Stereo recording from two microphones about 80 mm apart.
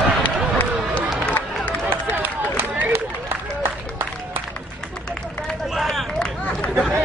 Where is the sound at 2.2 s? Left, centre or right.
Right.